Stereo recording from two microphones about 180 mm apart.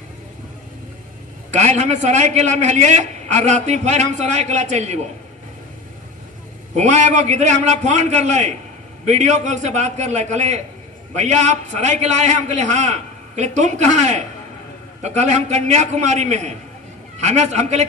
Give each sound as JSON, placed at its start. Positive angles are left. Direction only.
{"t": 1.5, "sound": "a man's voice", "side_deg": -40}
{"t": 6.7, "sound": "a man's voice", "side_deg": -40}